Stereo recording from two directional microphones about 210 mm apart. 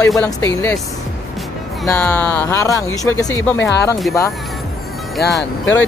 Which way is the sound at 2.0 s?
10° left (ahead or behind).